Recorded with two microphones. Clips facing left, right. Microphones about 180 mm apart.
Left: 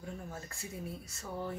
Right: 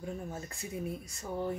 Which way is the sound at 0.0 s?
20° right (ahead or behind).